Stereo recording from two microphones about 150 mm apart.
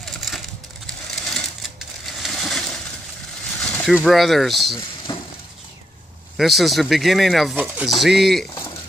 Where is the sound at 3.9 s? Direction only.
5° right (ahead or behind).